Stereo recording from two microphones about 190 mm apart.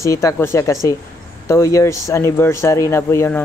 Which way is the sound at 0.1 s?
15° left (ahead or behind).